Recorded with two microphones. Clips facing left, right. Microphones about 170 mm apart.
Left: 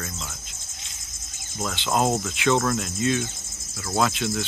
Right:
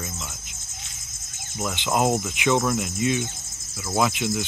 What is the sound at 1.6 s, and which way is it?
Speech, 15° right (ahead or behind).